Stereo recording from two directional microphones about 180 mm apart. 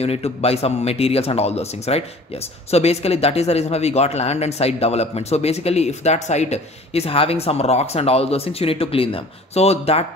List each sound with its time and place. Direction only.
0.0 s a man's voice: 35° left (ahead or behind)